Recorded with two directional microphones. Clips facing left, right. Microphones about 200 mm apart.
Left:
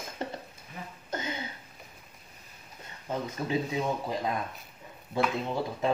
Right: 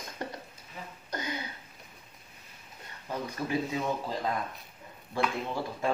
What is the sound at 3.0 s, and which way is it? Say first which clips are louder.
Speech: left 2 dB; 20° left (ahead or behind).